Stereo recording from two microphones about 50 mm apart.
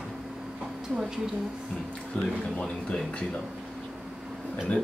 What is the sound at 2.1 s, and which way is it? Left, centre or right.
Speech, left.